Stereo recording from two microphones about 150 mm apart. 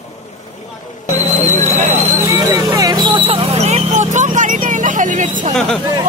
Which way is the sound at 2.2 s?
25° right (ahead or behind).